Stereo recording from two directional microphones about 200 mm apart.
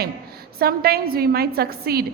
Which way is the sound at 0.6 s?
50° right (ahead or behind).